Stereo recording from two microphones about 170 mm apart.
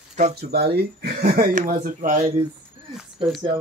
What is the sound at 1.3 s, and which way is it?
Speech, 50° right (ahead or behind).